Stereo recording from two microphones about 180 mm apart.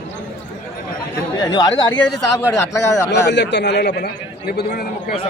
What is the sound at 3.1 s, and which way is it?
A man's voice, 75° left (ahead or behind).